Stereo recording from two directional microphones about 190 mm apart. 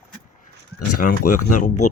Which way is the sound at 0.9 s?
45° left (ahead or behind).